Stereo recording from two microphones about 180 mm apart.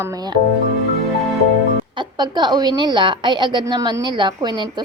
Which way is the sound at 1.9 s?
25° right (ahead or behind).